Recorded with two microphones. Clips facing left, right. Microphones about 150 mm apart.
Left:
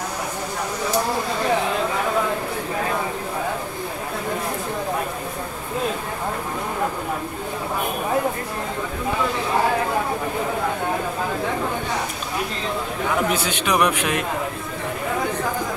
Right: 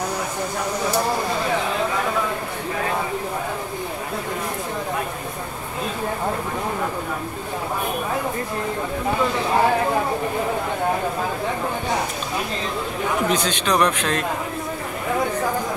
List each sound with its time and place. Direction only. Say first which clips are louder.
13.3 s speech: right 1 dB; 10° left (ahead or behind)